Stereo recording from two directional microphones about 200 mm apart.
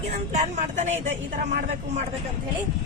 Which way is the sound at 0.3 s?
35° right (ahead or behind).